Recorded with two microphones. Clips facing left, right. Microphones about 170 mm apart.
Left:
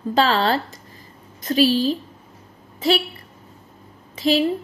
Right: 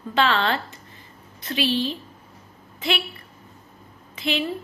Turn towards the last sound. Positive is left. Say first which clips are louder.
# left 7 dB
turn(degrees=35)  # may be behind; listen again after turning